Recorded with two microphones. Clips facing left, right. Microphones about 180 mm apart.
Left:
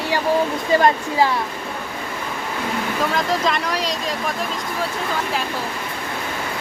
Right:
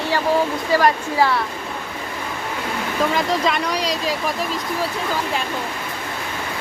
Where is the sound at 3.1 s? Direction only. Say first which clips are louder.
Right 1 dB; centre (ahead or behind).